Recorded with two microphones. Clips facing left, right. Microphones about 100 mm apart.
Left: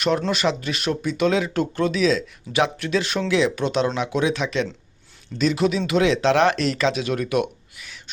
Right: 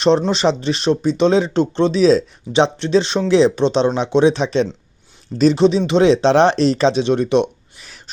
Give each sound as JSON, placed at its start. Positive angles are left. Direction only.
{"t": 0.0, "sound": "speech", "side_deg": -30}